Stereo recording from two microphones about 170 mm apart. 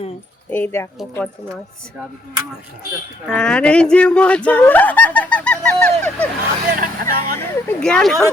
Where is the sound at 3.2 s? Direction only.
5° left (ahead or behind).